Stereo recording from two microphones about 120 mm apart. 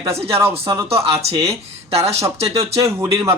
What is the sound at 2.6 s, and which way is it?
Speech, 25° right (ahead or behind).